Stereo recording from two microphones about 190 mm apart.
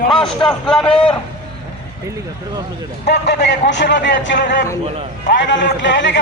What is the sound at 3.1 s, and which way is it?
A man's voice, 60° left (ahead or behind).